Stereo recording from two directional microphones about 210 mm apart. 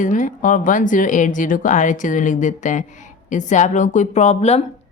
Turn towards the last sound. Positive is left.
turn(degrees=30)  # may be behind; listen again after turning